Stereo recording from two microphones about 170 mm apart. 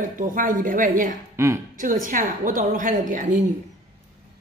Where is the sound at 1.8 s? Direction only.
50° right (ahead or behind).